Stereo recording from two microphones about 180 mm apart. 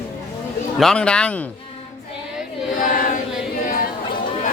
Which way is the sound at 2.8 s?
45° left (ahead or behind).